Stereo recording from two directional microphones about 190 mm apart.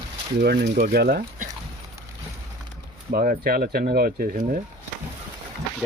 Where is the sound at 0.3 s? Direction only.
55° right (ahead or behind).